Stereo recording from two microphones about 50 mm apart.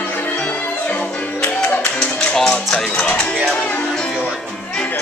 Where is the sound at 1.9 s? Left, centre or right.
Centre.